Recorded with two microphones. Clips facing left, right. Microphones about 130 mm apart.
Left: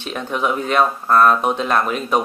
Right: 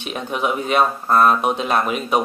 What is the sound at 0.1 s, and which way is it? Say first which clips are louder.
Speech: left 1 dB; 15° right (ahead or behind).